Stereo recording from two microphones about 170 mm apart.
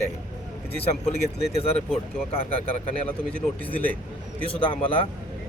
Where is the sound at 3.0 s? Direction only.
10° left (ahead or behind).